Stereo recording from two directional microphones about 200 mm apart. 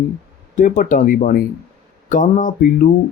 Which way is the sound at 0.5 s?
40° left (ahead or behind).